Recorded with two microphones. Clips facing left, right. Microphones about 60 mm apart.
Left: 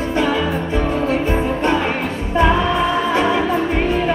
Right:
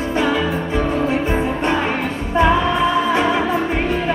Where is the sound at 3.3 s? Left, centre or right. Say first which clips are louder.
Left 1 dB; centre.